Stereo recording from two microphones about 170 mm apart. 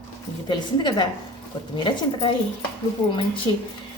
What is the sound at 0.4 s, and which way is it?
Speech, 25° left (ahead or behind).